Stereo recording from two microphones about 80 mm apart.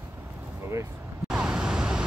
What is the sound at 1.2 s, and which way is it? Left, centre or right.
Vehicle, centre.